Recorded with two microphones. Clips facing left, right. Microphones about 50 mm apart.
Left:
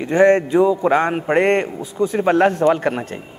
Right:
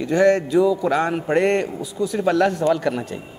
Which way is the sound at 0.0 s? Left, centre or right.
Left.